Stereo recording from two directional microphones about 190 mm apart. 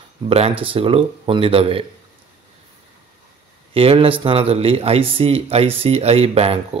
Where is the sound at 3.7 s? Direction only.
30° right (ahead or behind).